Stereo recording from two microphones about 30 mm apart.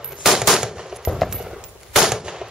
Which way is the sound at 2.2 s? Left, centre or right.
Right.